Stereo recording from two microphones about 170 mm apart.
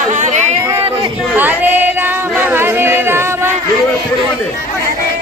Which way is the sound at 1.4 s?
10° right (ahead or behind).